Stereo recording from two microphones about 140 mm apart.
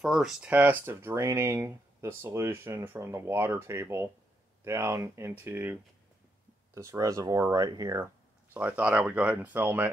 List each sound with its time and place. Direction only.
0.0 s speech: centre (ahead or behind)
0.5 s speech: 15° right (ahead or behind)
8.5 s speech: 10° right (ahead or behind)